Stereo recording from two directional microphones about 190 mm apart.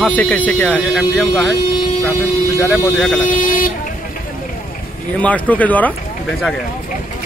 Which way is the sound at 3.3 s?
45° left (ahead or behind).